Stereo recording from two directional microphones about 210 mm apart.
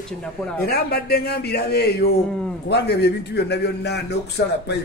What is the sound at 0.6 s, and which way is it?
A man's voice, 45° left (ahead or behind).